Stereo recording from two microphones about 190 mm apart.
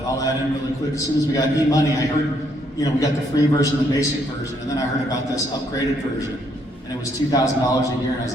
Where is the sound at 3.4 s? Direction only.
20° left (ahead or behind).